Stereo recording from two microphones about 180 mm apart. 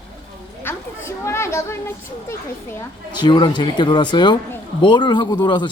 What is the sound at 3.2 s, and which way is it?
Speech, 25° left (ahead or behind).